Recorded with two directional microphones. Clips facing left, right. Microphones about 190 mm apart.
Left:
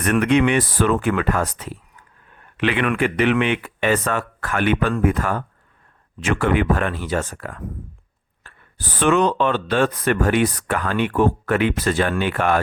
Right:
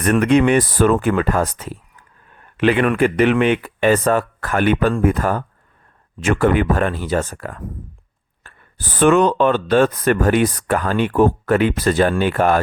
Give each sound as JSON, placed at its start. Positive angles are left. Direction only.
{"t": 0.0, "sound": "speech", "side_deg": -40}
{"t": 9.0, "sound": "speech", "side_deg": -45}